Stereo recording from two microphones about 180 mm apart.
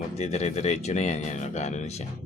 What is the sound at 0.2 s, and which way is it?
Speech, 40° left (ahead or behind).